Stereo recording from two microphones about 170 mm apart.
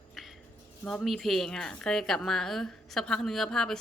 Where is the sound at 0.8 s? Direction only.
5° left (ahead or behind).